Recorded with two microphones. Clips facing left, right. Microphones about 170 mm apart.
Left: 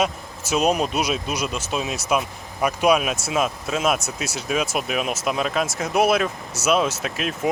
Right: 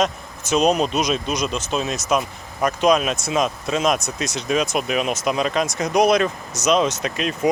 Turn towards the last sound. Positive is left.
turn(degrees=0)  # may be behind; listen again after turning